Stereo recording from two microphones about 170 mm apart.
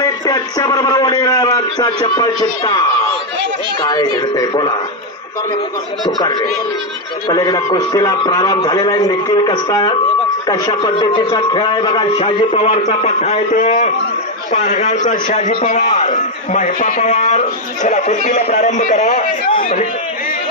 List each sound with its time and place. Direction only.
0.0 s a man's voice: 20° left (ahead or behind)
4.4 s a man's voice: 20° left (ahead or behind)
7.2 s a man's voice: 25° left (ahead or behind); by 19.9 s 50° left (ahead or behind)